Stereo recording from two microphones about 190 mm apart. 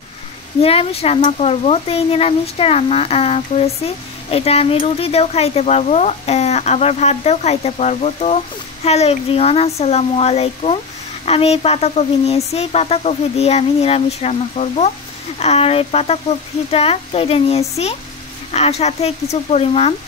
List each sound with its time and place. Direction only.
0.6 s speech: 30° left (ahead or behind)